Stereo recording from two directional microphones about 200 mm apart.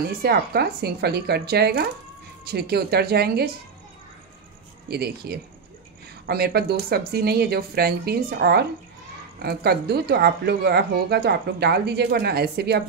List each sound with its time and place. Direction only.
0.2 s speech: 50° right (ahead or behind)
4.8 s speech: 55° right (ahead or behind)